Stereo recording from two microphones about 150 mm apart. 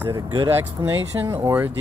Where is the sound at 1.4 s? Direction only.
10° right (ahead or behind).